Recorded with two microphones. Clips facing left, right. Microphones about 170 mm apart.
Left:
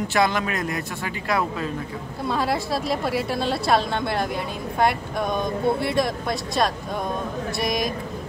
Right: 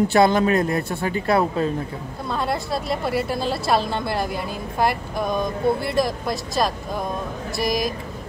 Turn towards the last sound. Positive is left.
turn(degrees=0)  # may be behind; listen again after turning